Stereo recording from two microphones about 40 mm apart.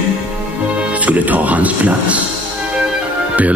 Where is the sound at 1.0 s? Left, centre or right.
Right.